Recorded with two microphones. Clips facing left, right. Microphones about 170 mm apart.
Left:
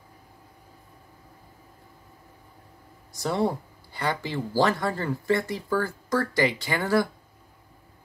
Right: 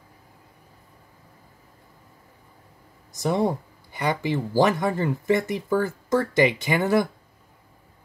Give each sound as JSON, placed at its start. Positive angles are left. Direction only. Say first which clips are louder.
{"t": 3.1, "sound": "speech", "louder": "right 3 dB", "side_deg": -20}